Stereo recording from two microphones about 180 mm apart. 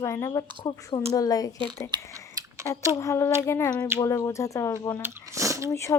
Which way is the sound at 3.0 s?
15° left (ahead or behind).